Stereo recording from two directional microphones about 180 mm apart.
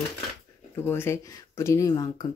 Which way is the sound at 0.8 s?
10° left (ahead or behind).